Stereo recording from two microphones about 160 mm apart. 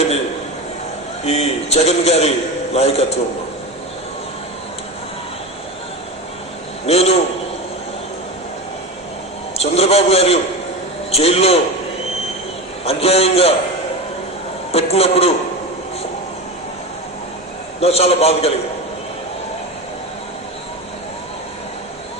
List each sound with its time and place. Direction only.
1.2 s a man's voice: 40° left (ahead or behind)
6.8 s a man's voice: 40° left (ahead or behind)
9.6 s a man's voice: 40° left (ahead or behind)
12.8 s a man's voice: 40° left (ahead or behind)
14.7 s a man's voice: 40° left (ahead or behind)
17.7 s a man's voice: 40° left (ahead or behind)